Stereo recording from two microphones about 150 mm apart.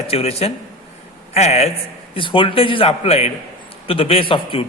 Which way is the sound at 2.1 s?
35° left (ahead or behind).